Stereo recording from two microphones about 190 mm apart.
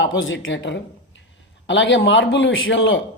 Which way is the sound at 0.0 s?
80° left.